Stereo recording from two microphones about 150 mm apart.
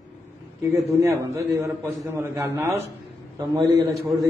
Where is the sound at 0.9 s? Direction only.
20° right (ahead or behind).